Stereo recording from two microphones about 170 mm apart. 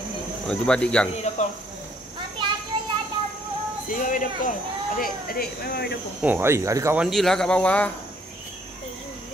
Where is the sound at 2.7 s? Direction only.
25° right (ahead or behind).